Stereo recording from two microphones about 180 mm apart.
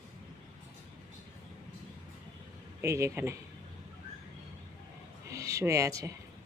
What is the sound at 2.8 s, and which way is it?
Speech, 15° right (ahead or behind).